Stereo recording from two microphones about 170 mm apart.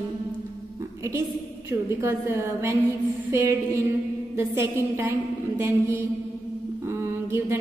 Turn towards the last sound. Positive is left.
turn(degrees=-15)  # may be behind; listen again after turning